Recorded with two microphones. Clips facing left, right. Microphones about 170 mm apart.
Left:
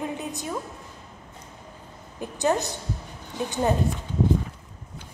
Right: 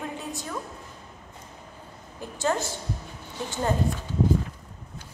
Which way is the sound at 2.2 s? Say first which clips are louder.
Left 3 dB; 20° left (ahead or behind).